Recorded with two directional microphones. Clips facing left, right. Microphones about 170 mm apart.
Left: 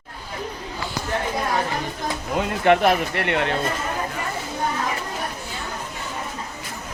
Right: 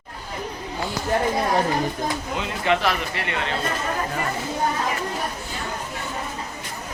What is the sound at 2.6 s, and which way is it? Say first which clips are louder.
Speech: left 5 dB; 55° left (ahead or behind).